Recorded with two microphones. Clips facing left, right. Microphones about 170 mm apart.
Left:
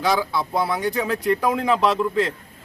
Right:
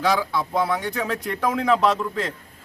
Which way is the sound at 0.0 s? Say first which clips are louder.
Even; centre (ahead or behind).